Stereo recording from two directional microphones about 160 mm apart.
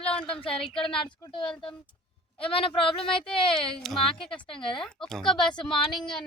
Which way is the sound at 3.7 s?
5° left (ahead or behind).